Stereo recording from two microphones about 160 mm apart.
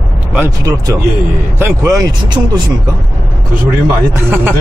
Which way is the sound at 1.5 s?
20° right (ahead or behind).